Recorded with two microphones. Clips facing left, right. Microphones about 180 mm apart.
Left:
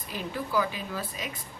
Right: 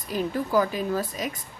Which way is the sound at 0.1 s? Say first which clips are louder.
Right 6 dB; 45° right (ahead or behind).